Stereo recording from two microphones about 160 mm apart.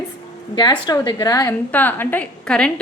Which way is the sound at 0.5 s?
25° left (ahead or behind).